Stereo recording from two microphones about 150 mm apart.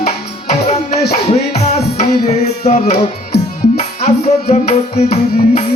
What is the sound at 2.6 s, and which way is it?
Music, 50° left (ahead or behind).